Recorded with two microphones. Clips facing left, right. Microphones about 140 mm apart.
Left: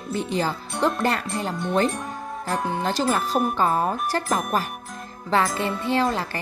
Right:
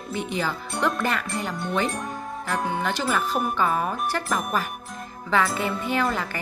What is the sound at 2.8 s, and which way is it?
Speech, 35° left (ahead or behind).